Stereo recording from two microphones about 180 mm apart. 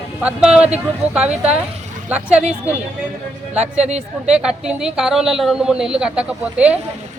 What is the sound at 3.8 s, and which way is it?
Speech, 35° right (ahead or behind).